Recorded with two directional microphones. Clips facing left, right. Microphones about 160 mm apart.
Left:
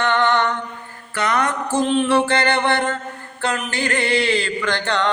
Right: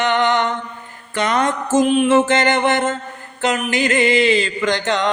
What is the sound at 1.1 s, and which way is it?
Mantra, 25° right (ahead or behind).